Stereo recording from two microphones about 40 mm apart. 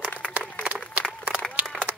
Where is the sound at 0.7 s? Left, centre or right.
Right.